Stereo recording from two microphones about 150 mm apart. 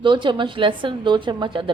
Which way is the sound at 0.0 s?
30° right (ahead or behind).